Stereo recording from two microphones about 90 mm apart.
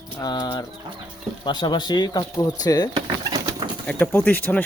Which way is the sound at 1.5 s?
55° left (ahead or behind).